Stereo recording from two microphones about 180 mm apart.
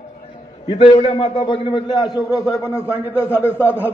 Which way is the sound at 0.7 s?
30° left (ahead or behind).